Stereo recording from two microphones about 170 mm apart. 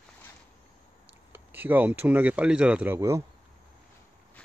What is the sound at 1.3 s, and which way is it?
Speech, 10° right (ahead or behind).